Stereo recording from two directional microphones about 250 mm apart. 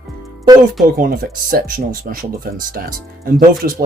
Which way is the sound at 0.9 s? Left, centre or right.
Right.